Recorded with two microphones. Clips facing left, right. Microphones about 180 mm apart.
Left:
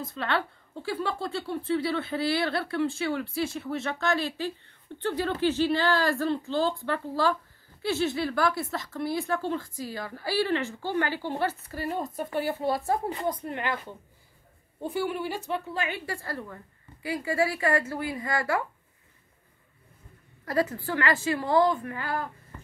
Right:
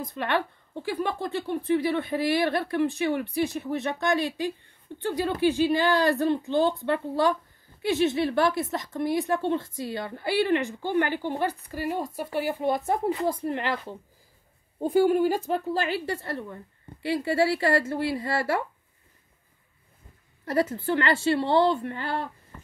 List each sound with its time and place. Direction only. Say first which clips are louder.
0.0 s speech: right 2 dB; 15° right (ahead or behind)
14.8 s speech: right 9 dB; 40° right (ahead or behind)
16.2 s speech: right 3 dB; 20° right (ahead or behind)
20.5 s speech: right 3 dB; 25° right (ahead or behind)